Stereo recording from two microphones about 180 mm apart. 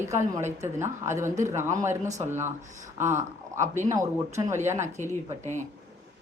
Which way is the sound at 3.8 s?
20° right (ahead or behind).